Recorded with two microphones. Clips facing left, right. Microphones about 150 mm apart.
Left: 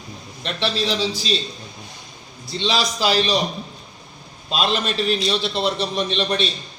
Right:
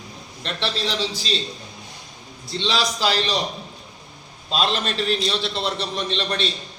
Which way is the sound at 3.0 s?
10° left (ahead or behind).